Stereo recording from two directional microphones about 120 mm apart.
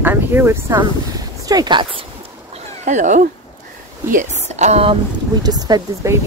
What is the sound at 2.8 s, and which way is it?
Speech, 90° right.